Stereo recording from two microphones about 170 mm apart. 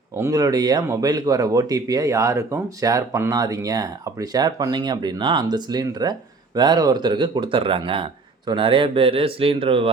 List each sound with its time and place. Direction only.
0.2 s speech: 20° right (ahead or behind)